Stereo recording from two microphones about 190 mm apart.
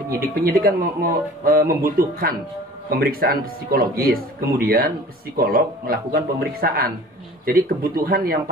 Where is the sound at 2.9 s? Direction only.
50° right (ahead or behind).